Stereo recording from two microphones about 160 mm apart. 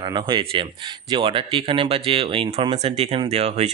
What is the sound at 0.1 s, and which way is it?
A man's voice, 30° right (ahead or behind).